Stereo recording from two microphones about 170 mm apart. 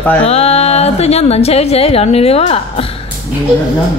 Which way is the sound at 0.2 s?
35° left (ahead or behind).